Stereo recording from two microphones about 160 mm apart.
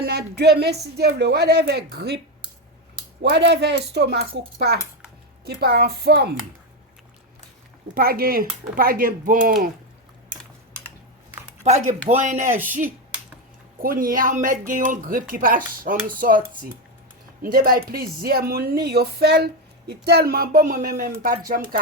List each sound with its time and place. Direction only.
0.0 s a woman's voice: 90° right
7.9 s speech: 70° right (ahead or behind)
11.6 s speech: 45° right (ahead or behind)
13.8 s speech: 60° right (ahead or behind)
17.4 s speech: 65° right (ahead or behind)